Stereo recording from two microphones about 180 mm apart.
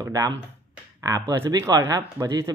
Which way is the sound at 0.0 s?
20° right (ahead or behind).